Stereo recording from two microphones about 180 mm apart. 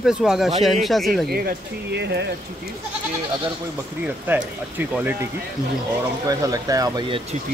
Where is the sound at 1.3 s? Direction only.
60° right (ahead or behind).